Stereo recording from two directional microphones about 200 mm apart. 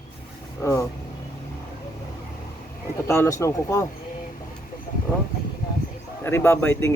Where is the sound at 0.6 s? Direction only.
15° left (ahead or behind).